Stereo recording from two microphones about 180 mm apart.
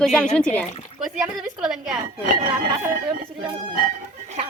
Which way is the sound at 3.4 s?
30° right (ahead or behind).